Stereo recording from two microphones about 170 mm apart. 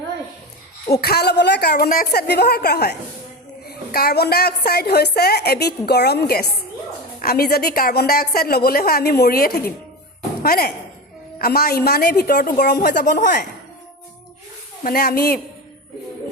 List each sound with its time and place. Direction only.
1.0 s a woman's voice: 70° left (ahead or behind); by 13.4 s 50° left (ahead or behind)
14.8 s a woman's voice: 60° left (ahead or behind)